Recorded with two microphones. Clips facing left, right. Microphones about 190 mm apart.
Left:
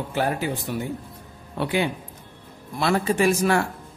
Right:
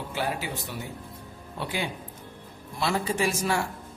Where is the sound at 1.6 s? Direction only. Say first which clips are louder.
Left 8 dB; 65° left (ahead or behind).